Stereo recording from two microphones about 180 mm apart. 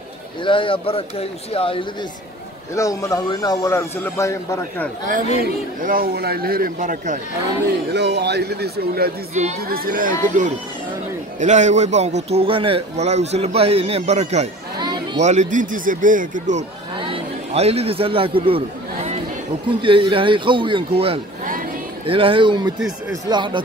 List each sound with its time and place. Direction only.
0.4 s speech: 30° left (ahead or behind)
2.7 s a man's voice: 15° left (ahead or behind)
5.4 s speech: 50° right (ahead or behind)
7.9 s speech: 70° right (ahead or behind)
9.3 s a man's voice: 40° right (ahead or behind)
9.6 s a man's voice: 55° right (ahead or behind)
16.9 s a man's voice: 30° right (ahead or behind)
19.8 s a man's voice: 30° right (ahead or behind)
22.8 s speech: 5° right (ahead or behind)
23.2 s a man's voice: 25° right (ahead or behind)